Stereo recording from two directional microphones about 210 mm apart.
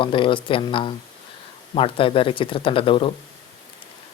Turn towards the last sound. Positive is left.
turn(degrees=25)  # may be behind; listen again after turning